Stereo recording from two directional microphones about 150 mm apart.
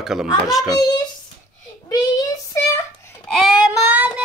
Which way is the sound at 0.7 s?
30° left (ahead or behind).